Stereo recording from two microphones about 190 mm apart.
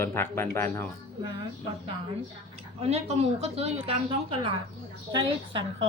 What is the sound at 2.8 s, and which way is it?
A woman's voice, 35° right (ahead or behind).